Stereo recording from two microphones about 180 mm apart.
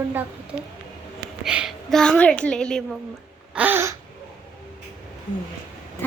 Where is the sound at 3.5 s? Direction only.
10° right (ahead or behind).